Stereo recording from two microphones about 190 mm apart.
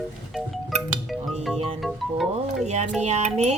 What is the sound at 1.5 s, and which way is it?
Music, 30° right (ahead or behind).